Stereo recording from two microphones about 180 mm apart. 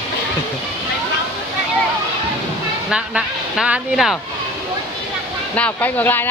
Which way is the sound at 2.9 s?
5° right (ahead or behind).